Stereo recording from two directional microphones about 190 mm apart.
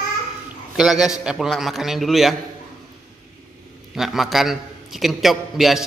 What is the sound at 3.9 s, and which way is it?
A man's voice, centre (ahead or behind).